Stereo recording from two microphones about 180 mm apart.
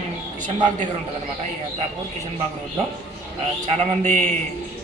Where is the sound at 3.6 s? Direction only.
40° right (ahead or behind).